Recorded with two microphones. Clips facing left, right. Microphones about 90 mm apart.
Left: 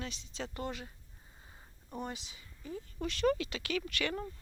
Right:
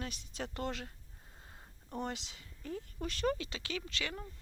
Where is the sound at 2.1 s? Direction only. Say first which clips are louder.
Right 2 dB; 75° right (ahead or behind).